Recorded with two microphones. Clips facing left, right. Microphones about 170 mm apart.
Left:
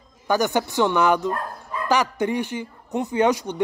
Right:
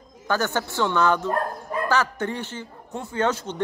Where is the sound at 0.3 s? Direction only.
15° left (ahead or behind).